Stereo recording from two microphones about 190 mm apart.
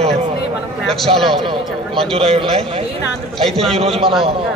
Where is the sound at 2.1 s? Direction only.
30° right (ahead or behind).